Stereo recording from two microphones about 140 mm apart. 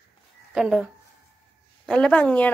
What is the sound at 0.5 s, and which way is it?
Speech, 5° right (ahead or behind).